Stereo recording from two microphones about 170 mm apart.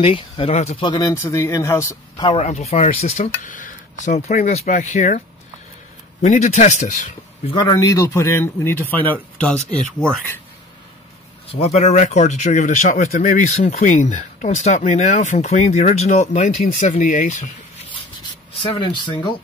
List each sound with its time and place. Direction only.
0.0 s speech: 35° left (ahead or behind)
0.8 s speech: 20° left (ahead or behind)
2.3 s speech: 40° left (ahead or behind)
6.2 s speech: 45° left (ahead or behind)
7.7 s speech: 20° left (ahead or behind)
11.4 s speech: 40° left (ahead or behind)
18.7 s speech: 30° left (ahead or behind)